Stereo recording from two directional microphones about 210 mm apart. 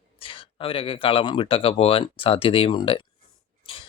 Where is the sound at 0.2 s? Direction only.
25° left (ahead or behind).